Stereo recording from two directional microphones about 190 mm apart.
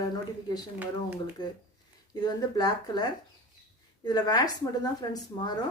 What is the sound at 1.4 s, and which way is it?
A woman's voice, 20° left (ahead or behind).